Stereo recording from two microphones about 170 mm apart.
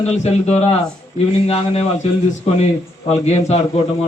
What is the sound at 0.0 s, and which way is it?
A man's voice, 40° left (ahead or behind).